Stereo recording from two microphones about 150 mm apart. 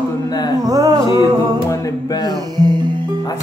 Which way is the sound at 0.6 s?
25° right (ahead or behind).